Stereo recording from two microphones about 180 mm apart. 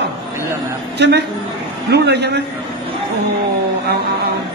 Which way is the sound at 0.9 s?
70° right (ahead or behind).